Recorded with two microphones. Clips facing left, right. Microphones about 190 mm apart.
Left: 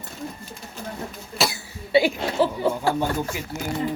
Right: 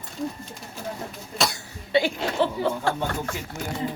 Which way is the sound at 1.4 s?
5° left (ahead or behind).